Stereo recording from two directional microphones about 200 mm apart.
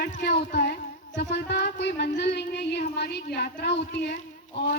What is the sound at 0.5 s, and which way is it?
Music, 50° left (ahead or behind).